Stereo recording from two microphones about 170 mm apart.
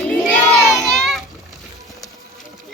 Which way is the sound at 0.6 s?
Centre (ahead or behind).